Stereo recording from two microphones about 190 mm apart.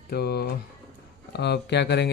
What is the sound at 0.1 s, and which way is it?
Speech, 55° left (ahead or behind).